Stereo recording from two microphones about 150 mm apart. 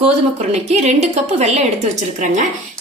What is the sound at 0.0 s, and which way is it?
A woman's voice, 45° right (ahead or behind).